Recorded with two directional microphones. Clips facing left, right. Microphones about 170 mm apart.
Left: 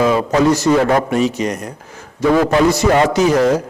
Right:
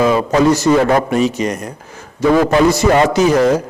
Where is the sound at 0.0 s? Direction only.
20° right (ahead or behind).